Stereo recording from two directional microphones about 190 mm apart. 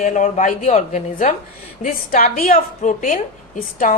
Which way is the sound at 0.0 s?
40° left (ahead or behind).